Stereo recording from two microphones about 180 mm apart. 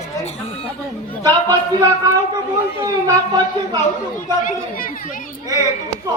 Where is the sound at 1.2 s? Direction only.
20° right (ahead or behind).